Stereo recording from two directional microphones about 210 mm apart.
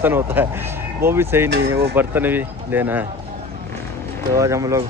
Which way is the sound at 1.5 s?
50° right (ahead or behind).